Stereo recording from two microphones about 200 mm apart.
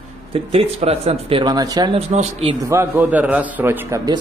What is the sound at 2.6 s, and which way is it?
A man's voice, 15° right (ahead or behind).